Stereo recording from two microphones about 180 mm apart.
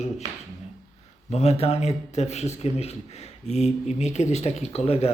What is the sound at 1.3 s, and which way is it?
A man's voice, 40° left (ahead or behind).